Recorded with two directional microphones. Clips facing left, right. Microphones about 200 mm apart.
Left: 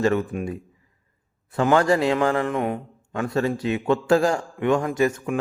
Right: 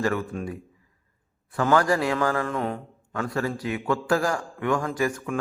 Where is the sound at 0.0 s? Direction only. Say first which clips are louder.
Left 5 dB; 25° left (ahead or behind).